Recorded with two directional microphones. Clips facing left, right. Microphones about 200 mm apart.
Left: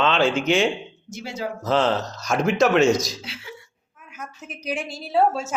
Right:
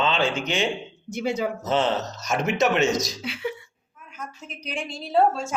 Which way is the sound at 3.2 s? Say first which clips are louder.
Right 9 dB; 60° right (ahead or behind).